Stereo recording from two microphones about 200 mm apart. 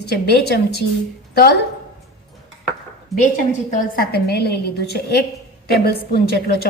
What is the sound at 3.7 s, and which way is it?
A woman's voice, 45° left (ahead or behind).